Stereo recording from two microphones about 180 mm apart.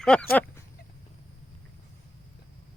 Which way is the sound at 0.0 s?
5° left (ahead or behind).